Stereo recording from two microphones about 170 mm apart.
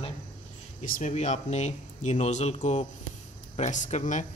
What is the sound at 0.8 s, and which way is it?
Speech, 50° left (ahead or behind).